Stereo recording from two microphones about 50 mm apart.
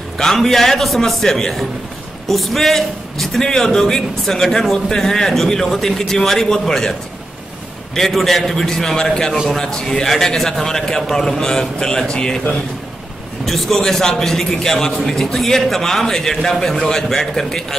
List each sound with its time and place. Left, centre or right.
0.2 s a man's voice: centre
13.5 s a man's voice: centre